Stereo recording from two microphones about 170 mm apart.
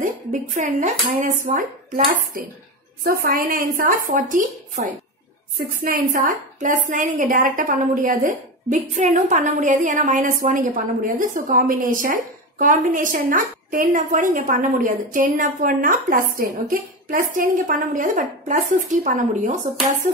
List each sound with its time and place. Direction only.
0.0 s a woman's voice: 45° right (ahead or behind)
5.9 s a woman's voice: 55° right (ahead or behind)